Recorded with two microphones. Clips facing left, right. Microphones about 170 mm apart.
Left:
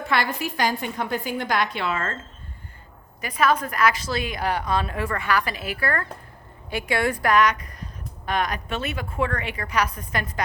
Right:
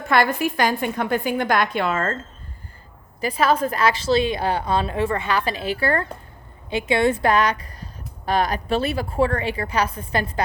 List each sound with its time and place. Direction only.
0.1 s a woman's voice: 50° right (ahead or behind)
3.2 s a woman's voice: 30° right (ahead or behind)